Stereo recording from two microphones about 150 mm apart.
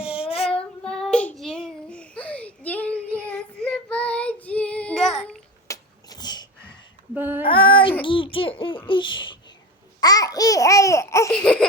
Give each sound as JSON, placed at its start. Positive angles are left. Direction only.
{"t": 0.0, "sound": "child singing", "side_deg": -5}
{"t": 0.9, "sound": "child singing", "side_deg": 5}
{"t": 5.6, "sound": "a sound", "side_deg": 25}
{"t": 7.1, "sound": "female singing", "side_deg": -15}
{"t": 7.4, "sound": "female singing", "side_deg": 35}
{"t": 8.0, "sound": "babbling", "side_deg": 35}
{"t": 11.3, "sound": "a sound", "side_deg": 5}